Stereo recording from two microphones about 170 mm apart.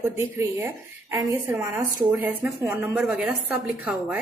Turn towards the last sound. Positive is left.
turn(degrees=-10)  # may be behind; listen again after turning